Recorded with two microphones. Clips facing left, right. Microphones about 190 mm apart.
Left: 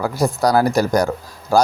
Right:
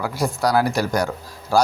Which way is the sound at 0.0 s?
40° left (ahead or behind).